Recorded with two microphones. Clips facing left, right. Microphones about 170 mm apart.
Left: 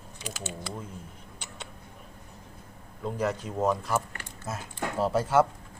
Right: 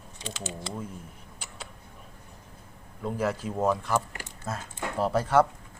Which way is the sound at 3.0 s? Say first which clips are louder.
Right 1 dB; 5° right (ahead or behind).